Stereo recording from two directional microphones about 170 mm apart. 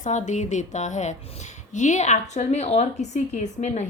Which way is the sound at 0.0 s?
45° left (ahead or behind).